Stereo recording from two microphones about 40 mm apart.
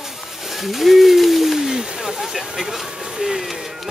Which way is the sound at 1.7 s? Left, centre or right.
Centre.